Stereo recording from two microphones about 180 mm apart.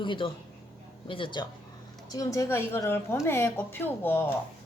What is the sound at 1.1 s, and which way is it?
A woman's voice, 25° left (ahead or behind).